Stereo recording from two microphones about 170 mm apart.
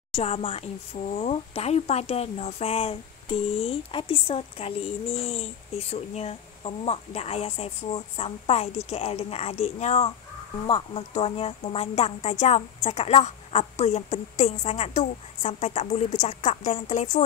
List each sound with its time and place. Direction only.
0.1 s speech: 35° left (ahead or behind)